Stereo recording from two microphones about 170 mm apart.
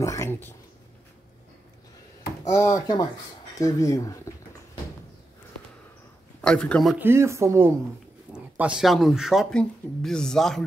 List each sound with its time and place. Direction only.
0.0 s speech: 15° left (ahead or behind)
2.5 s speech: 20° left (ahead or behind)
6.4 s speech: 5° left (ahead or behind)
7.0 s speech: 15° right (ahead or behind); by 10.6 s centre (ahead or behind)